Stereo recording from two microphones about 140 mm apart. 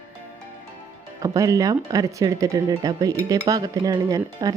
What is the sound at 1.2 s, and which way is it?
Speech, 25° right (ahead or behind).